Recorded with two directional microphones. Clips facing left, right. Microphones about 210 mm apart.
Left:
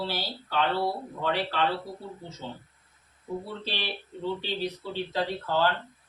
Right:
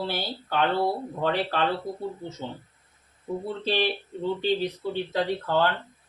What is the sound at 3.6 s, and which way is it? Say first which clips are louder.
Speech: right 10 dB; 50° right (ahead or behind).